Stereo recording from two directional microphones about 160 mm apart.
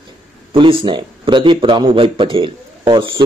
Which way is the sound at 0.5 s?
35° right (ahead or behind).